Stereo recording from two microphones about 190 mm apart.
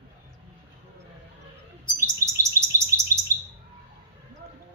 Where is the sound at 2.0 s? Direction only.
15° right (ahead or behind).